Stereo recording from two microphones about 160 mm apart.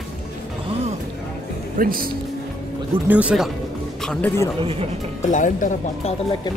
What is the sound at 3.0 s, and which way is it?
Speech, 10° right (ahead or behind).